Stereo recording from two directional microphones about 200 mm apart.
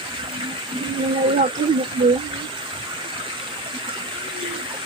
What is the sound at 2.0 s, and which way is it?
Speech, 25° right (ahead or behind).